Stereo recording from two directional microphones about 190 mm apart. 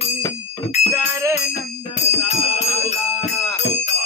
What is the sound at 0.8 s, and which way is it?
Jingle bell, 35° left (ahead or behind).